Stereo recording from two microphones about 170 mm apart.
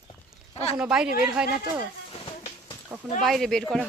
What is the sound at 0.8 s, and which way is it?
Speech, 5° right (ahead or behind).